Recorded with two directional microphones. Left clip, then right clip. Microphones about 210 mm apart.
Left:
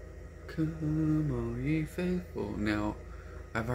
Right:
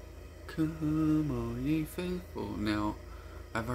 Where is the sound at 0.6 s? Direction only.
25° right (ahead or behind).